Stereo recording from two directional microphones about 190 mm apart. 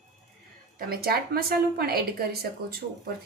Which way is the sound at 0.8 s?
55° right (ahead or behind).